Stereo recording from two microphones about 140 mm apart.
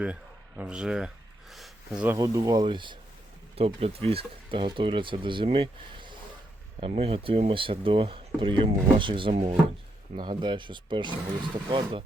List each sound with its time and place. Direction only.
0.0 s a sound: 10° right (ahead or behind)
2.1 s speech: 25° right (ahead or behind)
3.5 s speech: 45° right (ahead or behind)
9.3 s speech: 55° right (ahead or behind)
10.2 s speech: 35° right (ahead or behind)